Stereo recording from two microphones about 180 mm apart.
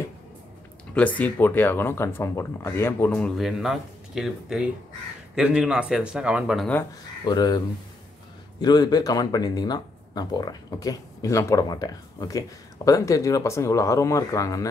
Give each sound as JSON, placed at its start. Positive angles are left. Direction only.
{"t": 0.9, "sound": "speech", "side_deg": 10}
{"t": 7.2, "sound": "speech", "side_deg": 20}